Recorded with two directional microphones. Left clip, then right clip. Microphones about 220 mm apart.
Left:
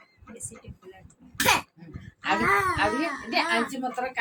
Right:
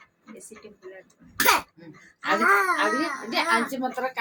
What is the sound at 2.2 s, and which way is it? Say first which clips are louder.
Wail: right 3 dB; 10° left (ahead or behind).